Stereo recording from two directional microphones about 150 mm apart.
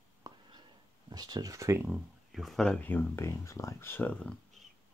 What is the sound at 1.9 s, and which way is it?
Speech, centre (ahead or behind).